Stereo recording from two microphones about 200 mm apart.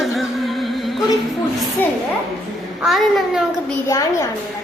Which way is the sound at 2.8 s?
Centre (ahead or behind).